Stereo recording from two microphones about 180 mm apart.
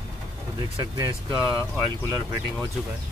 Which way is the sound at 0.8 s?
20° right (ahead or behind).